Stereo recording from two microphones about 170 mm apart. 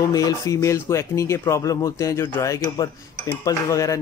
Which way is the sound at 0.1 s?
20° left (ahead or behind).